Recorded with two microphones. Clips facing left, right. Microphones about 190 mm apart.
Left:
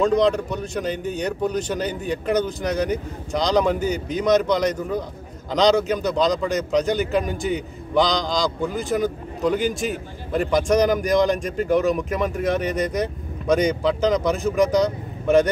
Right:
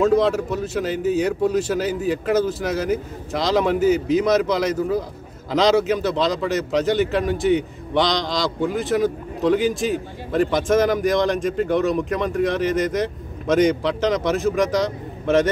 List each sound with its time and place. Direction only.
0.0 s a man's voice: 5° right (ahead or behind)